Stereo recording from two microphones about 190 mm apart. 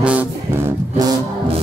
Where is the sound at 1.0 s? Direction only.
20° right (ahead or behind).